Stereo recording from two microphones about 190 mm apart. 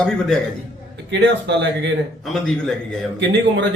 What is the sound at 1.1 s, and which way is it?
Speech, 70° right (ahead or behind).